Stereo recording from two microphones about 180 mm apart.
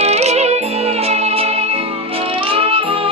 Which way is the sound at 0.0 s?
35° right (ahead or behind).